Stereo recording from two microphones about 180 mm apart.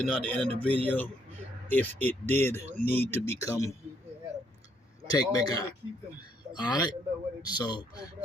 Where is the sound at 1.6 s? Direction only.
10° left (ahead or behind).